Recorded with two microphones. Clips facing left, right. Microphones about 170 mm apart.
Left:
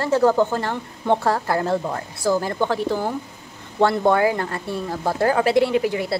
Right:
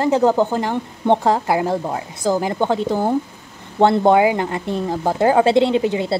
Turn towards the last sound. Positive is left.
turn(degrees=-25)  # may be behind; listen again after turning